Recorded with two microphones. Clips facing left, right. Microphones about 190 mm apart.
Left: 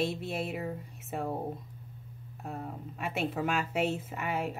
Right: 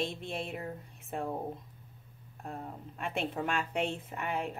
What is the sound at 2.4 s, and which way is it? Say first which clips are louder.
Speech: left 2 dB; 5° left (ahead or behind).